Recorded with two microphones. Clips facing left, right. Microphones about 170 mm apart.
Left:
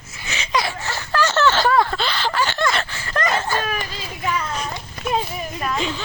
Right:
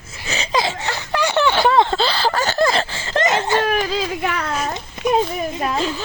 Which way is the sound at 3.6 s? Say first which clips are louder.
Right 8 dB; 85° right.